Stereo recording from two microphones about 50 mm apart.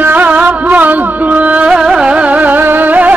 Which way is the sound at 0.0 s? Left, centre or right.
Right.